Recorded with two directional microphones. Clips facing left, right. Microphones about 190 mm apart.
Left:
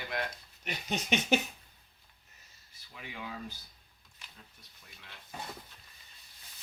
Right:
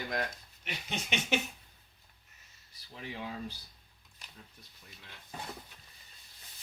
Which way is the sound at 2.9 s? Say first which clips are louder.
Right 3 dB; 35° right (ahead or behind).